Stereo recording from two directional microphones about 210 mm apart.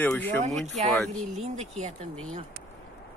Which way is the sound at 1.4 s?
30° right (ahead or behind).